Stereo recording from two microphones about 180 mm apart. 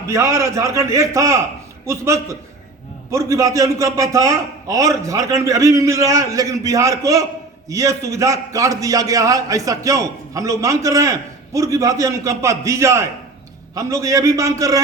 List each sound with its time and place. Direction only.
0.0 s a man's voice: 15° right (ahead or behind)